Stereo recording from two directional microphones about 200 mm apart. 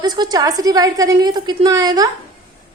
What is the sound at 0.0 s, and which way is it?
A woman's voice, 20° right (ahead or behind).